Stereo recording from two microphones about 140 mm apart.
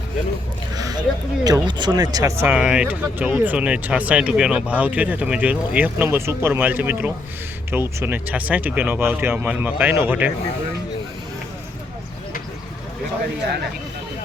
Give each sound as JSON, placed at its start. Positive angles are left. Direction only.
{"t": 0.8, "sound": "speech", "side_deg": -25}
{"t": 2.5, "sound": "speech", "side_deg": -10}